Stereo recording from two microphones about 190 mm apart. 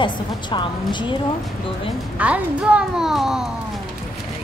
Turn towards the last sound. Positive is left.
turn(degrees=0)  # may be behind; listen again after turning